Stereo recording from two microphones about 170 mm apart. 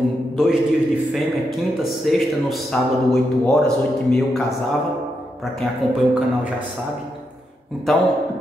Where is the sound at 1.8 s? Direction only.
Centre (ahead or behind).